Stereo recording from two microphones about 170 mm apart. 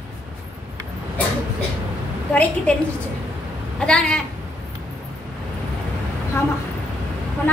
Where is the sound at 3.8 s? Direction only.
5° left (ahead or behind).